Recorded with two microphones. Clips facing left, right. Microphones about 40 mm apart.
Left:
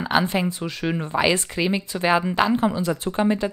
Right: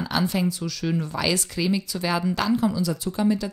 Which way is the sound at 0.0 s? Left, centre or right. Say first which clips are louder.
Left 3 dB; left.